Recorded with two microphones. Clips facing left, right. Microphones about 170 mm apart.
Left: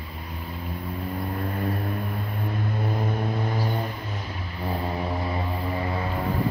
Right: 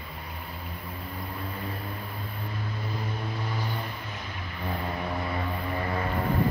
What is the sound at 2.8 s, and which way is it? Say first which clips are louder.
Vehicle: left 8 dB; 50° left (ahead or behind).